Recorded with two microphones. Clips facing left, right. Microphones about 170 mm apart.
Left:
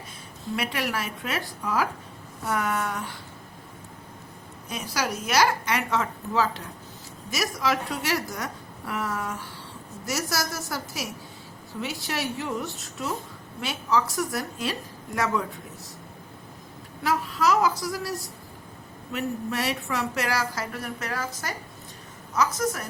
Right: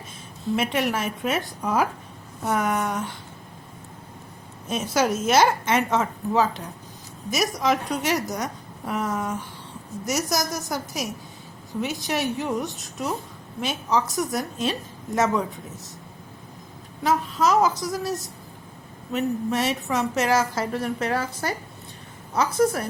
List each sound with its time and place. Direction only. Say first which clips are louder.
0.5 s a woman's voice: right 5 dB; 20° right (ahead or behind)
4.7 s a woman's voice: right 7 dB; 25° right (ahead or behind)
17.0 s a woman's voice: right 3 dB; 20° right (ahead or behind)